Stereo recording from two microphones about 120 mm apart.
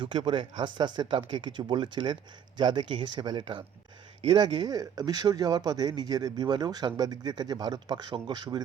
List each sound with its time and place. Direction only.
0.0 s speech: 45° right (ahead or behind)